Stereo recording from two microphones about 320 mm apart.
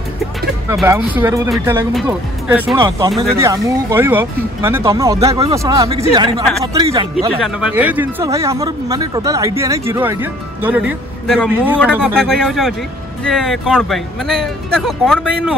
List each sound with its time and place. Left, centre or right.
0.7 s speech: centre